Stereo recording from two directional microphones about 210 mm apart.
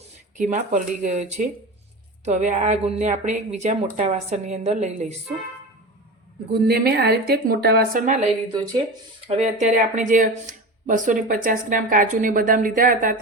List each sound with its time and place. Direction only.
0.3 s speech: 35° right (ahead or behind)
6.5 s a woman's voice: 50° right (ahead or behind)